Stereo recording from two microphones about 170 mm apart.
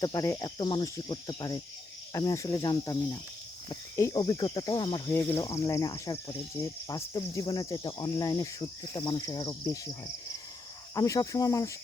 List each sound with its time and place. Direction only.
0.0 s speech: 20° left (ahead or behind)
5.1 s speech: 15° left (ahead or behind)
10.9 s speech: 20° left (ahead or behind)